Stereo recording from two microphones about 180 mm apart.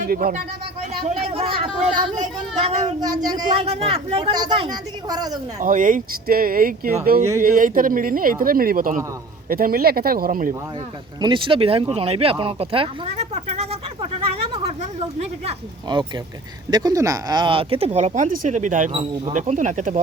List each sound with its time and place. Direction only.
0.0 s speech: 50° right (ahead or behind)
1.3 s speech: 30° right (ahead or behind)
5.5 s speech: 45° right (ahead or behind)
11.2 s speech: 25° right (ahead or behind)
14.5 s a sound: 35° right (ahead or behind)
15.9 s speech: 25° right (ahead or behind); by 18.9 s 45° right (ahead or behind)
18.9 s speech: 30° right (ahead or behind)
19.3 s speech: 45° right (ahead or behind)